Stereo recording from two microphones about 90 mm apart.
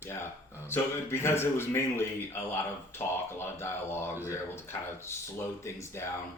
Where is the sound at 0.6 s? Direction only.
25° left (ahead or behind).